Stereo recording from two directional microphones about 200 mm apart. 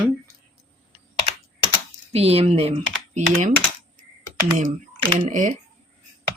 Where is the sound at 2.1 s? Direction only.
30° right (ahead or behind).